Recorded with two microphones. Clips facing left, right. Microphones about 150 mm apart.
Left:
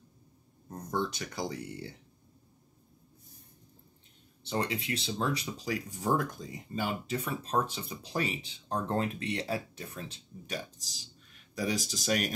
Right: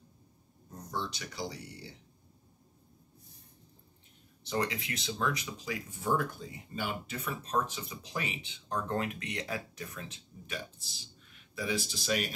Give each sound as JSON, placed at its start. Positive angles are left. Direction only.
{"t": 0.9, "sound": "speech", "side_deg": 50}
{"t": 4.4, "sound": "speech", "side_deg": 30}